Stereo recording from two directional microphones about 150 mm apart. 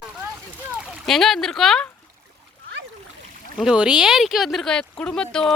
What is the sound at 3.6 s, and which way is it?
Speech, 5° right (ahead or behind).